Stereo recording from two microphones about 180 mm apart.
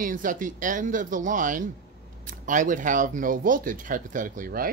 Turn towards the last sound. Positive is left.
turn(degrees=-50)  # may be behind; listen again after turning